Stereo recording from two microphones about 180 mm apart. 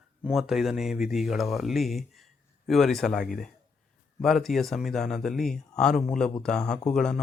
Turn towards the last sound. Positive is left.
turn(degrees=0)  # may be behind; listen again after turning